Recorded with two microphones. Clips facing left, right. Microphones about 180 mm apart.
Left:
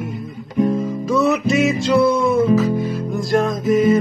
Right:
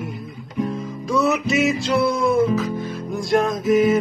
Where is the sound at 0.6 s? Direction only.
30° left (ahead or behind).